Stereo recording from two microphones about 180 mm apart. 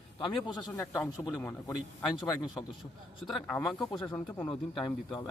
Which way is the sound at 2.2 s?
20° left (ahead or behind).